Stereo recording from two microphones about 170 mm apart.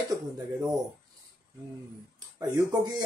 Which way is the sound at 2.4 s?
25° right (ahead or behind).